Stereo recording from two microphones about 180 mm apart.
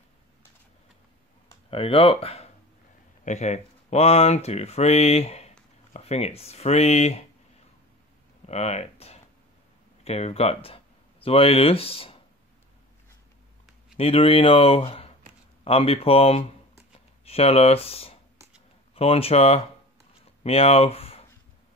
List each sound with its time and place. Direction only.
1.7 s speech: 30° left (ahead or behind)
8.5 s speech: 35° left (ahead or behind)
13.9 s speech: 30° left (ahead or behind)